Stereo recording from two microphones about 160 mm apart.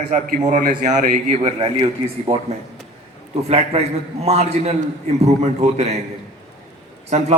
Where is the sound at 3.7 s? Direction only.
40° right (ahead or behind).